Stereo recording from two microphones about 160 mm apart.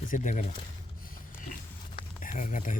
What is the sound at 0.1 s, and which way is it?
Speech, 50° left (ahead or behind).